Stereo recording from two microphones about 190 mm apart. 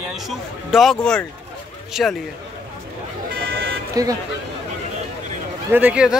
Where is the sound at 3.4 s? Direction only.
55° right (ahead or behind).